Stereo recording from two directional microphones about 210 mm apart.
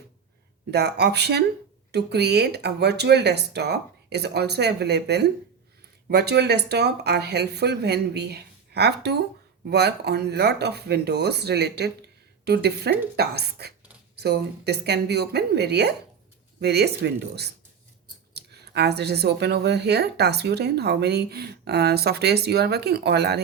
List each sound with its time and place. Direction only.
0.7 s speech: 50° right (ahead or behind)